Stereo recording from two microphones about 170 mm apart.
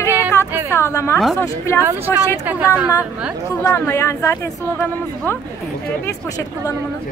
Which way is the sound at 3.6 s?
15° left (ahead or behind).